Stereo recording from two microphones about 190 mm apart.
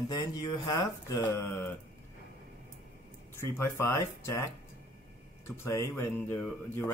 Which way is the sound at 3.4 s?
15° left (ahead or behind).